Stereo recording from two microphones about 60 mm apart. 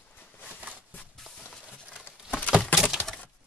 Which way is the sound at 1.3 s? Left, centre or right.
Centre.